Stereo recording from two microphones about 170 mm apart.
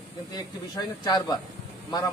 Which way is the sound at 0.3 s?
20° left (ahead or behind).